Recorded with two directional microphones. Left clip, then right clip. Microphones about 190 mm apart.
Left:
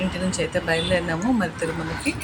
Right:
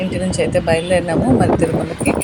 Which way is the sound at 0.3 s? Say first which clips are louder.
Right 8 dB; 15° right (ahead or behind).